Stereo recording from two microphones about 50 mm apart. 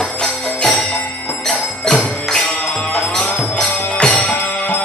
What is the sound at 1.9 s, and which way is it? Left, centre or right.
Music, centre.